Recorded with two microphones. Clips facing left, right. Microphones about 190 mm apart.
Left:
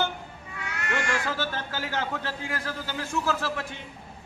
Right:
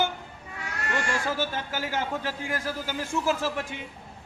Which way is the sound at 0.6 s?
35° right (ahead or behind).